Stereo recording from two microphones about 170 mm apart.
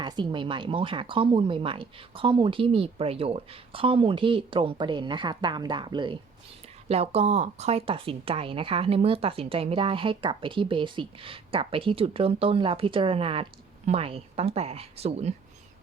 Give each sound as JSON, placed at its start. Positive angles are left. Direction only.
{"t": 0.0, "sound": "speech", "side_deg": -25}